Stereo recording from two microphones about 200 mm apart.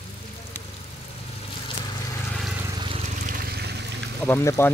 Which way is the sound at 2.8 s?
25° right (ahead or behind).